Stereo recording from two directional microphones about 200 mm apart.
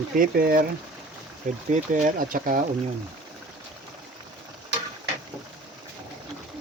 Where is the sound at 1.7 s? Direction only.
40° right (ahead or behind).